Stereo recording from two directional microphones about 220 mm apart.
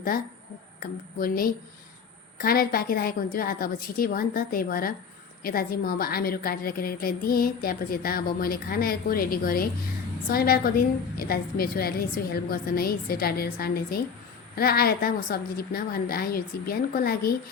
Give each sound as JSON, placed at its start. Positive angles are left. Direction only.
{"t": 0.8, "sound": "a woman's voice", "side_deg": 40}